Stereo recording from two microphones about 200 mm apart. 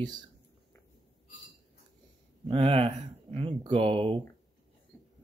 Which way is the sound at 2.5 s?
30° right (ahead or behind).